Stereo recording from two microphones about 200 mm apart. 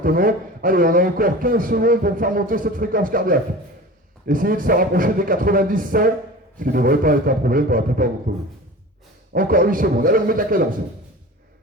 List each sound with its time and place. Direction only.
0.0 s a man's voice: 45° right (ahead or behind)
9.3 s a man's voice: 45° right (ahead or behind)